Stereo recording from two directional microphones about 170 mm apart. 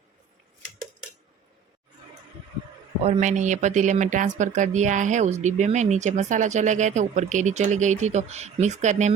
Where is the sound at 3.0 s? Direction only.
40° right (ahead or behind).